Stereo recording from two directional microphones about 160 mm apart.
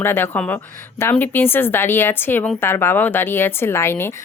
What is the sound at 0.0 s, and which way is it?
A woman's voice, 15° left (ahead or behind).